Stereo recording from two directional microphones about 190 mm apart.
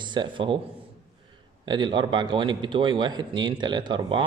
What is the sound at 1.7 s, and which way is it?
A man's voice, 25° right (ahead or behind).